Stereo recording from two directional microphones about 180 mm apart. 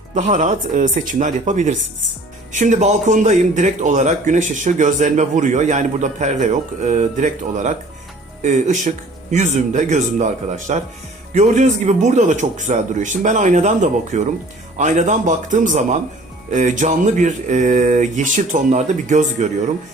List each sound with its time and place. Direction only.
0.1 s speech: 45° right (ahead or behind)